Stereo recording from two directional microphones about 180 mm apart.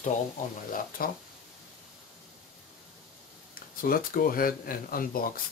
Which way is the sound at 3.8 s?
55° left (ahead or behind).